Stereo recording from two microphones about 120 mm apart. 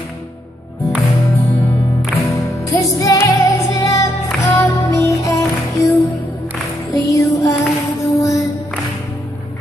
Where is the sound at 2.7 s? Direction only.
25° left (ahead or behind).